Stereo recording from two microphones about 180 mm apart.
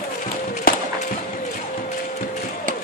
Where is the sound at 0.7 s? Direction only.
55° left (ahead or behind).